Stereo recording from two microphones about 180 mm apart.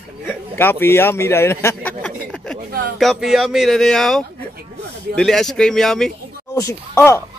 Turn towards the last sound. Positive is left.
turn(degrees=15)  # may be behind; listen again after turning